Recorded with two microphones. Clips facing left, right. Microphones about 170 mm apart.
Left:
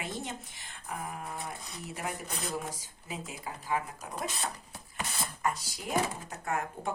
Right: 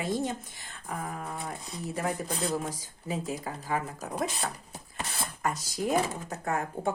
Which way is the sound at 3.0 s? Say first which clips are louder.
Right 7 dB; 35° right (ahead or behind).